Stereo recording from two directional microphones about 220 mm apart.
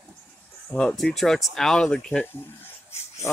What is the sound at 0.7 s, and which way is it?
Speech, centre (ahead or behind).